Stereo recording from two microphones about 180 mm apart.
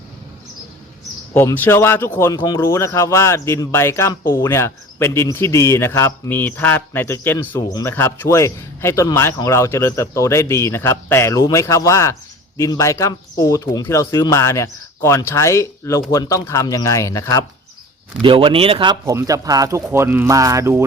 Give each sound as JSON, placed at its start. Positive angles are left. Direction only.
{"t": 1.3, "sound": "speech", "side_deg": 10}
{"t": 18.2, "sound": "speech", "side_deg": -30}